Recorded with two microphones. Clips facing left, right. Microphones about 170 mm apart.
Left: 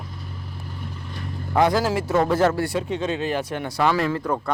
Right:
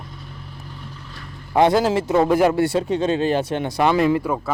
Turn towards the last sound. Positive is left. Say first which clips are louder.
# right 4 dB
turn(degrees=-10)  # may be behind; listen again after turning